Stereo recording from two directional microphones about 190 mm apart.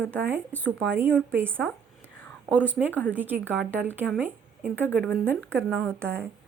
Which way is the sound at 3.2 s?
10° right (ahead or behind).